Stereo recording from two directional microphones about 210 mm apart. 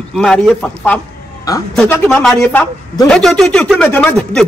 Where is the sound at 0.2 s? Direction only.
Centre (ahead or behind).